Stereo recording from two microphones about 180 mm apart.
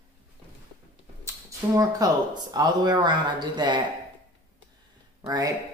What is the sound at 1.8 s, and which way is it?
Speech, 20° right (ahead or behind).